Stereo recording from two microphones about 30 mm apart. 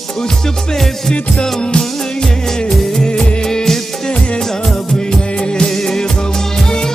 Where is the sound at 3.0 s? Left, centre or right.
Left.